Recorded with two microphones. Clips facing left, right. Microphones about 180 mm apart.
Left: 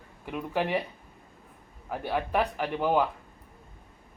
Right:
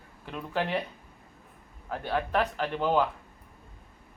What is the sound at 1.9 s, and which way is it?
Speech, 10° left (ahead or behind).